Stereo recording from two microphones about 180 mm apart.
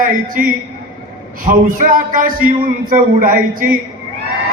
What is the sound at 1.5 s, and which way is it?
A man's voice, 50° right (ahead or behind).